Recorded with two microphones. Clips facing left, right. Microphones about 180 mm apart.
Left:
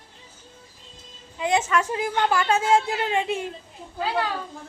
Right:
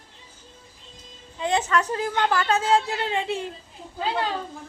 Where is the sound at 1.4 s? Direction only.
15° left (ahead or behind).